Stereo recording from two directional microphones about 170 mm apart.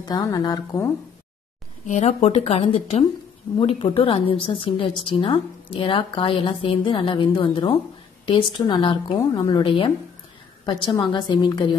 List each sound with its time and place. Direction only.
0.0 s a woman's voice: 20° left (ahead or behind)
1.9 s a woman's voice: 45° left (ahead or behind); by 11.7 s 25° left (ahead or behind)